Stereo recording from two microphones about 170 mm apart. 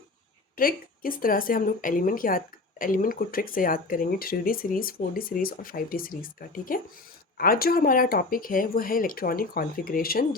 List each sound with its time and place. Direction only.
0.5 s a woman's voice: 55° left (ahead or behind)